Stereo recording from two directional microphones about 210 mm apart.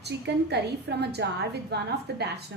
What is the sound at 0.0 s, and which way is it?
A woman's voice, 50° right (ahead or behind).